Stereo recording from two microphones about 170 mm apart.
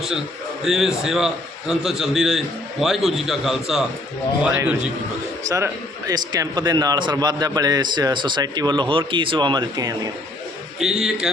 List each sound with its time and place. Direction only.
0.6 s a man's voice: centre (ahead or behind); by 10.1 s 25° right (ahead or behind)
10.8 s a man's voice: centre (ahead or behind)